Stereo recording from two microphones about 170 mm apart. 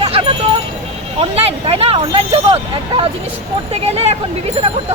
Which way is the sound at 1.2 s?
35° right (ahead or behind).